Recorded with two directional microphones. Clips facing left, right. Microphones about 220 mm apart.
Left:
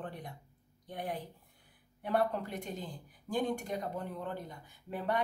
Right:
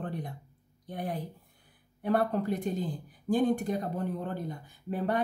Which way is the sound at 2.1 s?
40° right (ahead or behind).